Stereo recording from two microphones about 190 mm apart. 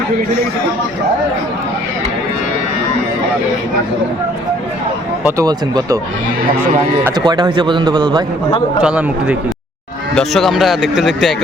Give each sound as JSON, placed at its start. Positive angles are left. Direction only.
{"t": 5.2, "sound": "speech", "side_deg": -20}
{"t": 7.3, "sound": "a man's voice", "side_deg": -25}
{"t": 8.8, "sound": "speech", "side_deg": -5}